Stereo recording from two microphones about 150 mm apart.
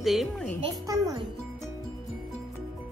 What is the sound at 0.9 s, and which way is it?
Speech, 25° right (ahead or behind).